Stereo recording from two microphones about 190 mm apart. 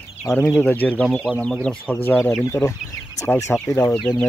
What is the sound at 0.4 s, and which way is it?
Speech, 5° left (ahead or behind).